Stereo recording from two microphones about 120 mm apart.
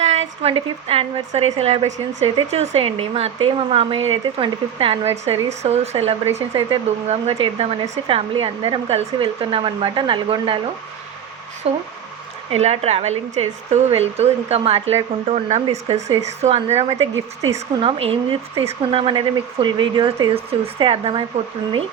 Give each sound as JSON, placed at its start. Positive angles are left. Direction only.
{"t": 0.0, "sound": "a woman's voice", "side_deg": -65}
{"t": 11.6, "sound": "a woman's voice", "side_deg": -55}
{"t": 17.7, "sound": "speech", "side_deg": -50}